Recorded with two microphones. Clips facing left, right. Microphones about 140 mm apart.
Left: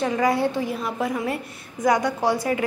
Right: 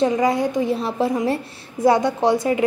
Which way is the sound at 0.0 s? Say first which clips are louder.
Right 3 dB; 20° right (ahead or behind).